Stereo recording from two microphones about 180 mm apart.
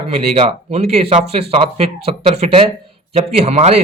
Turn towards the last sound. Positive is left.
turn(degrees=-35)  # may be behind; listen again after turning